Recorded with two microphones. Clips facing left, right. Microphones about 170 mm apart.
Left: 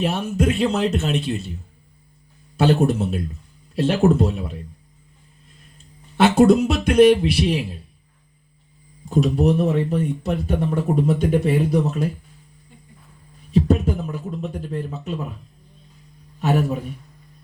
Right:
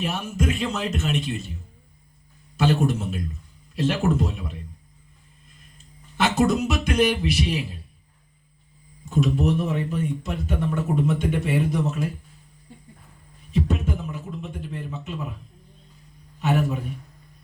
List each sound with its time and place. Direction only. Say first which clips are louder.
0.0 s speech: left 5 dB; 30° left (ahead or behind)
2.6 s speech: left 4 dB; 35° left (ahead or behind)
6.4 s speech: left 7 dB; 30° left (ahead or behind)
9.0 s speech: left 4 dB; 35° left (ahead or behind)
13.5 s a sound: left 6 dB; 35° left (ahead or behind)
16.4 s speech: left 3 dB; 35° left (ahead or behind)